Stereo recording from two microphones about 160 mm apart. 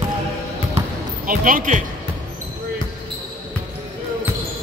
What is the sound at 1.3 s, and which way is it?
Speech, 60° right (ahead or behind).